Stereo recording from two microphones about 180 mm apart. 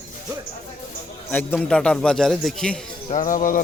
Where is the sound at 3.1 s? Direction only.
45° left (ahead or behind).